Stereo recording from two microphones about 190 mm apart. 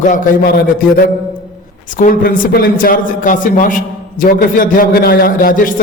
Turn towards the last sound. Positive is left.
turn(degrees=45)  # may be behind; listen again after turning